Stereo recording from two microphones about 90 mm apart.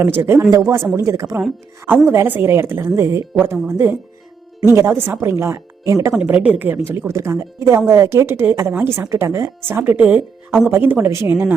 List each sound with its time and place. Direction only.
0.2 s speech: 25° right (ahead or behind)
0.5 s speech: 40° right (ahead or behind)
2.0 s speech: 25° right (ahead or behind)
6.2 s speech: 15° right (ahead or behind)